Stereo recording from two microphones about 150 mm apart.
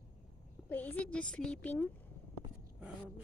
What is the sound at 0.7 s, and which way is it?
A woman's voice, 10° left (ahead or behind).